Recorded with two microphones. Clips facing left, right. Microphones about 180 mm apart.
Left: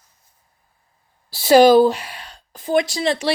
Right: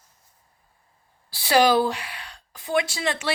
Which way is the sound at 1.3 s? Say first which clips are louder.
Left 8 dB; 40° left (ahead or behind).